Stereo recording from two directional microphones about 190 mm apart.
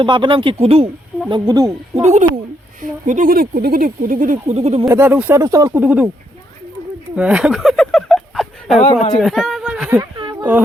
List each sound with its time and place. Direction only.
0.0 s speech: 25° right (ahead or behind)
2.0 s speech: 35° right (ahead or behind)
4.9 s speech: 10° right (ahead or behind)
5.8 s speech: 5° right (ahead or behind)
7.2 s a sound: 5° right (ahead or behind)
9.1 s speech: centre (ahead or behind)
10.0 s a sound: 25° right (ahead or behind)